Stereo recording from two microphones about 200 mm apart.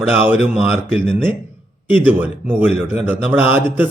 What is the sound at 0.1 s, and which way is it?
Speech, 10° right (ahead or behind).